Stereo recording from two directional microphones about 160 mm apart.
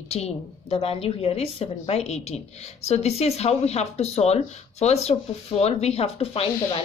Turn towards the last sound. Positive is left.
turn(degrees=35)  # may be behind; listen again after turning